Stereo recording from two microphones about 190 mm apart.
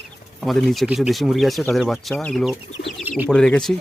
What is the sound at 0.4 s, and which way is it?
Speech, centre (ahead or behind).